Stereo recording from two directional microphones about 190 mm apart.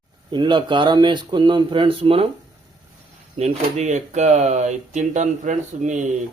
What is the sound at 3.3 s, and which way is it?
Speech, 35° right (ahead or behind).